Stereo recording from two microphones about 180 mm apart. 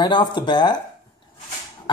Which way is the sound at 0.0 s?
25° left (ahead or behind).